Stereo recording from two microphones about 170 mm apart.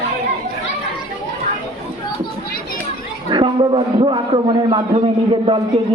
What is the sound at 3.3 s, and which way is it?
A man's voice, 30° right (ahead or behind).